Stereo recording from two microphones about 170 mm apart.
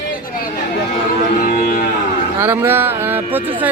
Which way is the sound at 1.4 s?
55° left (ahead or behind).